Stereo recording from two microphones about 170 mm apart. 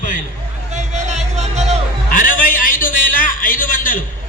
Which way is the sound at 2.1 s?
50° left (ahead or behind).